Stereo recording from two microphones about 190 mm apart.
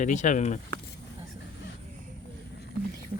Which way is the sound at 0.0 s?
40° left (ahead or behind).